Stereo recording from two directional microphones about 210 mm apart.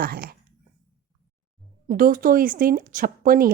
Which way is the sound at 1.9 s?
40° right (ahead or behind).